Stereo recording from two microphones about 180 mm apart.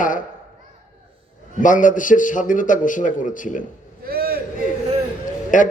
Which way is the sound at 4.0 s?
55° right (ahead or behind).